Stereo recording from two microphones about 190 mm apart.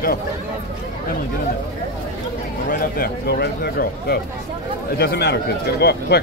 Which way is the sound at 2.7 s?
50° left (ahead or behind).